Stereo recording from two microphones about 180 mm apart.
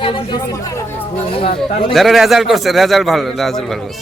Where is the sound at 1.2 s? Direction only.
30° left (ahead or behind).